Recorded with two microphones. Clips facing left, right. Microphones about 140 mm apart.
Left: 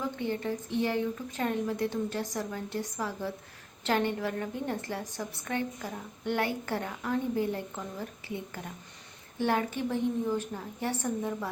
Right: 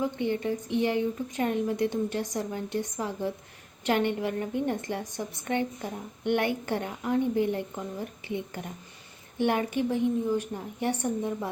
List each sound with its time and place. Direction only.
0.2 s a woman's voice: 20° right (ahead or behind)